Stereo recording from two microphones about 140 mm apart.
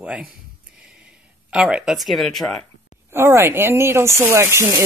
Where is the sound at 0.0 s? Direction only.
10° right (ahead or behind).